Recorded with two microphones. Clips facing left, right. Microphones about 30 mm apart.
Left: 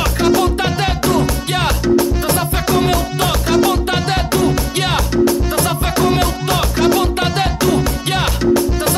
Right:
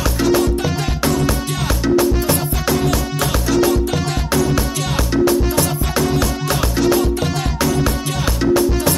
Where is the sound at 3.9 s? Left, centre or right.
Left.